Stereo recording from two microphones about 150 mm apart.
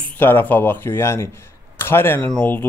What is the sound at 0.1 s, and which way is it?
Speech, 15° left (ahead or behind).